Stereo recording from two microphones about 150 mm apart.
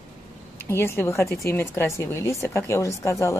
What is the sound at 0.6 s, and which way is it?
Speech, 15° left (ahead or behind).